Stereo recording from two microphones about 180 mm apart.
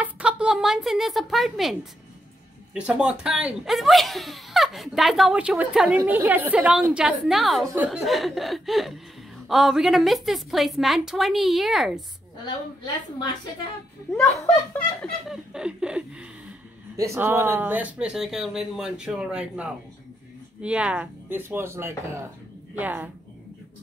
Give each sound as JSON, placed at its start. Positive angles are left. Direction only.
{"t": 0.0, "sound": "a woman's voice", "side_deg": -5}
{"t": 12.4, "sound": "a woman's voice", "side_deg": 25}
{"t": 14.1, "sound": "speech", "side_deg": 15}
{"t": 15.2, "sound": "speech", "side_deg": -5}
{"t": 16.9, "sound": "a woman's voice", "side_deg": -15}